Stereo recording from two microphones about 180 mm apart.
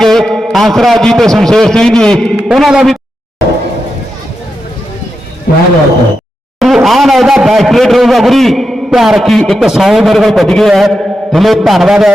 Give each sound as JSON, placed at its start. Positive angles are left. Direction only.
{"t": 0.0, "sound": "a man's voice", "side_deg": 0}
{"t": 5.5, "sound": "a man's voice", "side_deg": 50}
{"t": 6.6, "sound": "a man's voice", "side_deg": 0}